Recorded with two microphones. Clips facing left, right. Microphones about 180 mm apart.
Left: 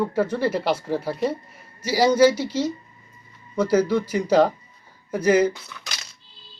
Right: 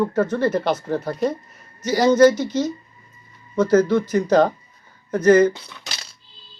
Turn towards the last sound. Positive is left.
turn(degrees=-30)  # may be behind; listen again after turning